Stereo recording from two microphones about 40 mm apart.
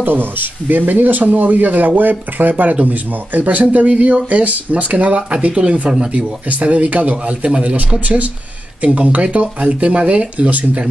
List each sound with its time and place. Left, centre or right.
0.0 s speech: right
8.8 s speech: right